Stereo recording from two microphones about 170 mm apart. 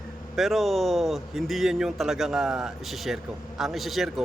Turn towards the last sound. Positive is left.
turn(degrees=0)  # may be behind; listen again after turning